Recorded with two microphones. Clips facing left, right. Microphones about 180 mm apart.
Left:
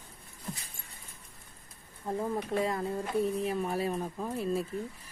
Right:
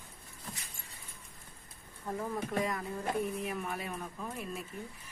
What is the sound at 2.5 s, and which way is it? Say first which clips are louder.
Speech: left 5 dB; 30° left (ahead or behind).